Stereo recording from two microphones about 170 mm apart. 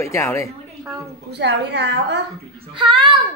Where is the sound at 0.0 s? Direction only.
15° left (ahead or behind).